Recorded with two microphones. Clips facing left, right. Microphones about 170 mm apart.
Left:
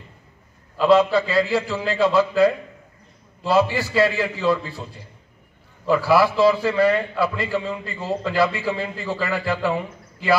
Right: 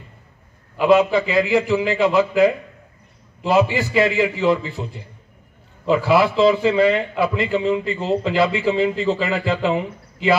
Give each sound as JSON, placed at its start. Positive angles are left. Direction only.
{"t": 0.7, "sound": "a man's voice", "side_deg": -15}